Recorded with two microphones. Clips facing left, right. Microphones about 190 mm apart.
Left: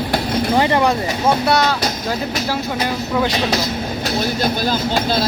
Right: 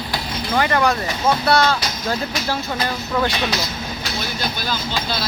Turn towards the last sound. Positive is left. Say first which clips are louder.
# left 7 dB
turn(degrees=45)  # may be behind; listen again after turning